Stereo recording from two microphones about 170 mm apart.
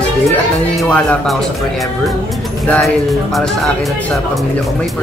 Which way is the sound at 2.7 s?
5° left (ahead or behind).